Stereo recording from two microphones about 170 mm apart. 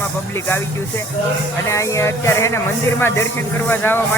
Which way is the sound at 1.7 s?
15° left (ahead or behind).